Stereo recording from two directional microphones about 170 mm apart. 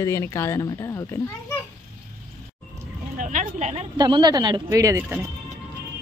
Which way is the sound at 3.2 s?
50° right (ahead or behind).